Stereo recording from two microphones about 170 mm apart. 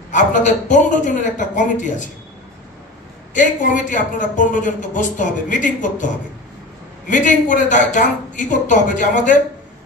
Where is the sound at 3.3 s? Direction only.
50° left (ahead or behind).